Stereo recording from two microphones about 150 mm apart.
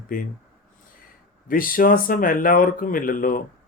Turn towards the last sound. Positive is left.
turn(degrees=65)  # may be behind; listen again after turning